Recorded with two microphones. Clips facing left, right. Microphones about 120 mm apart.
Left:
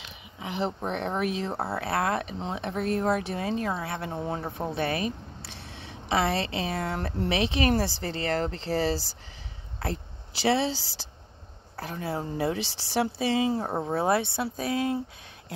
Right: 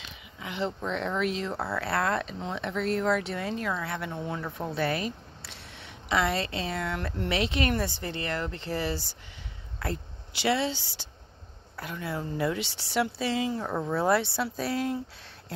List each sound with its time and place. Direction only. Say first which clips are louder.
0.4 s speech: left 2 dB; 25° left (ahead or behind)
11.7 s speech: left 2 dB; 30° left (ahead or behind)